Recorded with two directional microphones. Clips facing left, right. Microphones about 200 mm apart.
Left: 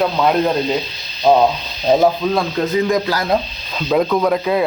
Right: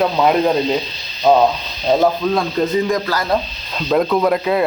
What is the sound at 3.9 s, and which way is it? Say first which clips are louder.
Speech: even; centre (ahead or behind).